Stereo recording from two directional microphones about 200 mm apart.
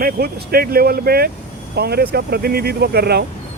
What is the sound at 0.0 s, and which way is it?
Speech, 50° right (ahead or behind).